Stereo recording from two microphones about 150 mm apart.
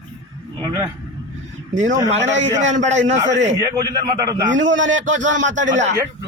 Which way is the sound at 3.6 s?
25° right (ahead or behind).